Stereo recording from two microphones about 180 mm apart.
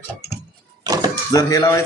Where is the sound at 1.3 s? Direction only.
20° left (ahead or behind).